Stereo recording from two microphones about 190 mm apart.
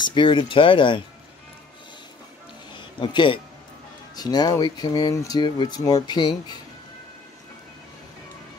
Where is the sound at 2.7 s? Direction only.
25° left (ahead or behind).